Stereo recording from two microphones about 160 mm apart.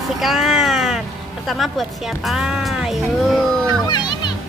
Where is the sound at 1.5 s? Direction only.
Centre (ahead or behind).